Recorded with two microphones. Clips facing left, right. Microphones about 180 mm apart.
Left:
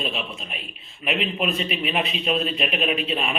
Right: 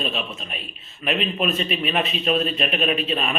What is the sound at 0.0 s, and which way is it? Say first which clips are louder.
A man's voice: right 1 dB; 15° left (ahead or behind).